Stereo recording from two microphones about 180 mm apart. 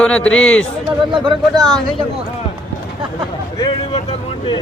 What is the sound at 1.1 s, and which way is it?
Speech, 25° right (ahead or behind).